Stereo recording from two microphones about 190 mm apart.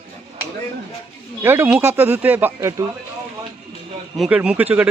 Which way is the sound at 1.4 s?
10° right (ahead or behind).